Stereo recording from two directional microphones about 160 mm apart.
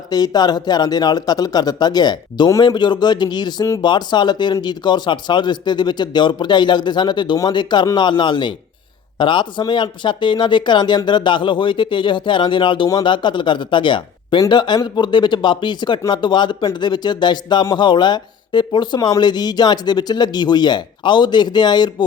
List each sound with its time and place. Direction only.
0.1 s speech: 25° left (ahead or behind)